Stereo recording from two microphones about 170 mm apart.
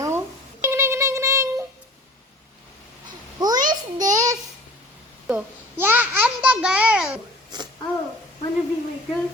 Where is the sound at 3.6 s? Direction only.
20° right (ahead or behind).